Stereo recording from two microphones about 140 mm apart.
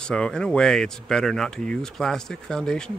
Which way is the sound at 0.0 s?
5° left (ahead or behind).